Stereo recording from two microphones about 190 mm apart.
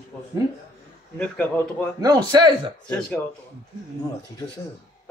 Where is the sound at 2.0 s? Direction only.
20° right (ahead or behind).